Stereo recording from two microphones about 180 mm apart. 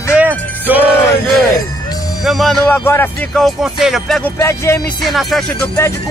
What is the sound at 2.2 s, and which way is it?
Speech, centre (ahead or behind).